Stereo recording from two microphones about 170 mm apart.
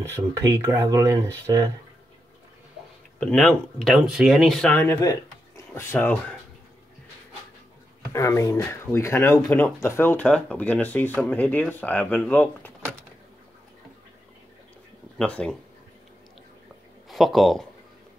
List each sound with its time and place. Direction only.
0.0 s speech: 15° right (ahead or behind)
3.2 s speech: 5° left (ahead or behind)
4.7 s speech: 15° left (ahead or behind)
8.1 s speech: 15° left (ahead or behind)
15.1 s speech: 5° left (ahead or behind)
17.1 s speech: centre (ahead or behind)